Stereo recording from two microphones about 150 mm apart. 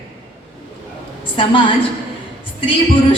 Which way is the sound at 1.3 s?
35° left (ahead or behind).